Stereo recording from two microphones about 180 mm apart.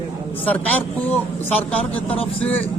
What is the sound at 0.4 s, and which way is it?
A man's voice, 10° left (ahead or behind).